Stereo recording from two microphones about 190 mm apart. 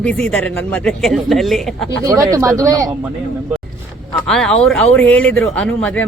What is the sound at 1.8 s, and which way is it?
Speech, 20° right (ahead or behind).